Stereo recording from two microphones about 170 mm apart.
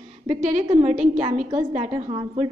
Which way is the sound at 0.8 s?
45° right (ahead or behind).